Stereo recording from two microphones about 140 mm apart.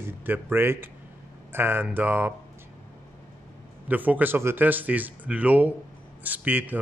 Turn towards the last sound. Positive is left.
turn(degrees=-10)  # may be behind; listen again after turning